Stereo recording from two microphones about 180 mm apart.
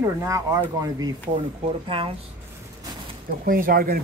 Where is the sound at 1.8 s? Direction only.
30° right (ahead or behind).